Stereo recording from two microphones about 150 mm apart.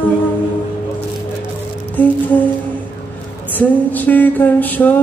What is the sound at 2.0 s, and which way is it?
Humming, 10° left (ahead or behind).